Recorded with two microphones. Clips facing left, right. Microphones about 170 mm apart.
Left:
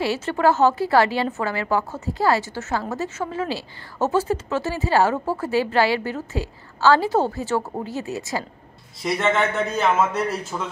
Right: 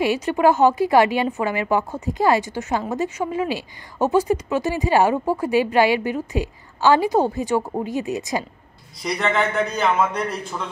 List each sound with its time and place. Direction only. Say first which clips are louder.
0.0 s a woman's voice: right 2 dB; 15° right (ahead or behind)
9.0 s a man's voice: left 1 dB; centre (ahead or behind)